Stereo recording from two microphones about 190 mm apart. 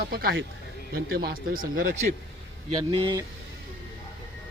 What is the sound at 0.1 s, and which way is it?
Speech, 55° right (ahead or behind).